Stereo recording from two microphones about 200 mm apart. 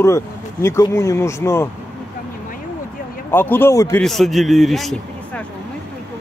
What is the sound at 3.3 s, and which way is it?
Speech, 10° left (ahead or behind).